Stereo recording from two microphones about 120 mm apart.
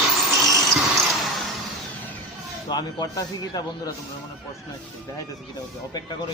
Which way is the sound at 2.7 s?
35° left (ahead or behind).